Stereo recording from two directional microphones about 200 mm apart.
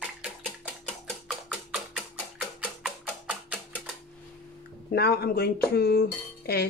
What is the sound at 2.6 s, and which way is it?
Music, 5° right (ahead or behind).